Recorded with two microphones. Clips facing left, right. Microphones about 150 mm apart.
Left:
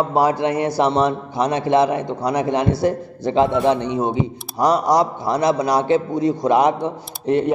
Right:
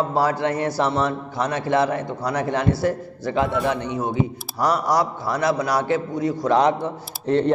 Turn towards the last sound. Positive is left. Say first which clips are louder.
# left 1 dB
turn(degrees=15)  # may be behind; listen again after turning